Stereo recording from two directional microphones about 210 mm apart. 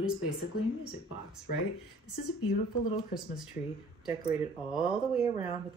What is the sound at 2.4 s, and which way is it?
Speech, 25° left (ahead or behind).